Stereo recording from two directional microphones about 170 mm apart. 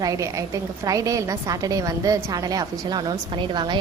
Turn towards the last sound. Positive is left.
turn(degrees=-25)  # may be behind; listen again after turning